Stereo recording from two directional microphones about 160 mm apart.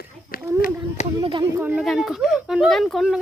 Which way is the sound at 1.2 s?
30° right (ahead or behind).